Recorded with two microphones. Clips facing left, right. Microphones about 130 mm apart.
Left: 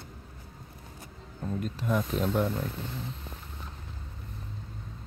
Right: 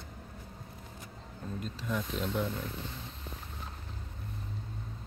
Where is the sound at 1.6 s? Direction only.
50° left (ahead or behind).